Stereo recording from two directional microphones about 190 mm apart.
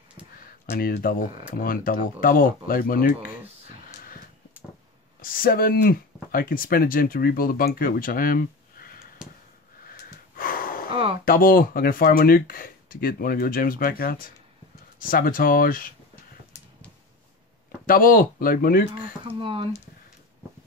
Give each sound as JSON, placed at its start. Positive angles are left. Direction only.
{"t": 0.7, "sound": "speech", "side_deg": 55}
{"t": 5.2, "sound": "speech", "side_deg": 50}
{"t": 10.3, "sound": "a sound", "side_deg": 50}
{"t": 10.9, "sound": "a sound", "side_deg": -25}
{"t": 11.2, "sound": "speech", "side_deg": 50}
{"t": 17.8, "sound": "speech", "side_deg": 50}
{"t": 19.2, "sound": "speech", "side_deg": -25}